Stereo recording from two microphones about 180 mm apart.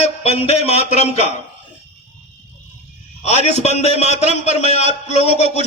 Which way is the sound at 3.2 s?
40° left (ahead or behind).